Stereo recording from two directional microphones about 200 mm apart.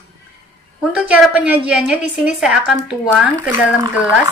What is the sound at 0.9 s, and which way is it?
A woman's voice, 5° right (ahead or behind).